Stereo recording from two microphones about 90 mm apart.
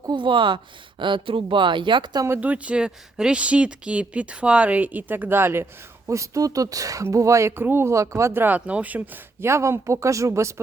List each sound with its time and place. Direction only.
0.2 s speech: 65° right (ahead or behind)
2.4 s speech: 15° right (ahead or behind)
6.1 s speech: 35° right (ahead or behind); by 9.0 s 15° right (ahead or behind)
9.4 s speech: 30° right (ahead or behind)